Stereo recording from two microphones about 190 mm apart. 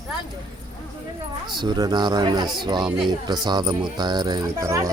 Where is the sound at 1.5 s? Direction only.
25° right (ahead or behind).